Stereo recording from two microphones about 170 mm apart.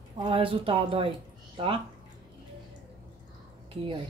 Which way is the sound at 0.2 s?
30° right (ahead or behind).